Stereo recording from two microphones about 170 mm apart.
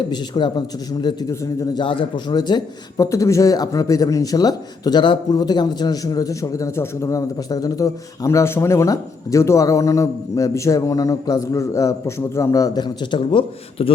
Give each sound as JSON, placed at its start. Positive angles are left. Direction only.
{"t": 0.1, "sound": "a man's voice", "side_deg": 25}